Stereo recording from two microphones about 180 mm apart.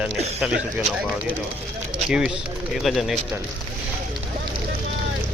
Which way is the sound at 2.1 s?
5° right (ahead or behind).